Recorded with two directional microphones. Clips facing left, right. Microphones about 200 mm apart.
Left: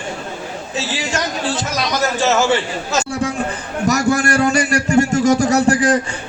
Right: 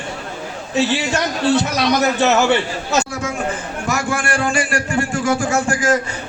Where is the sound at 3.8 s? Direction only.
40° left (ahead or behind).